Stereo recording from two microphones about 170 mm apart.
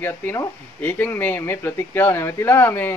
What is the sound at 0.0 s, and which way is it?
Speech, 10° left (ahead or behind).